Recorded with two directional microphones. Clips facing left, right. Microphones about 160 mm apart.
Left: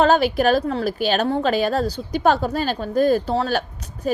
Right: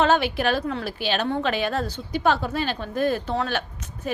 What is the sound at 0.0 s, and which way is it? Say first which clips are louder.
A woman's voice: left 4 dB; 40° left (ahead or behind).